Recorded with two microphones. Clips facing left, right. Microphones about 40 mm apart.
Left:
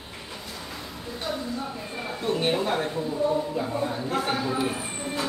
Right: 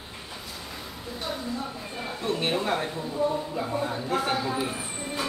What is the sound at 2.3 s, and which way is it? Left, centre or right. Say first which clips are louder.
Speech: left 2 dB; centre.